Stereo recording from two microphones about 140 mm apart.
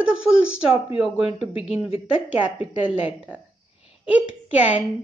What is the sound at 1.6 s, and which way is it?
A woman's voice, 10° right (ahead or behind).